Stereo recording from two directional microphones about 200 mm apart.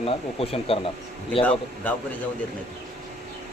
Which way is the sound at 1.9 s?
5° left (ahead or behind).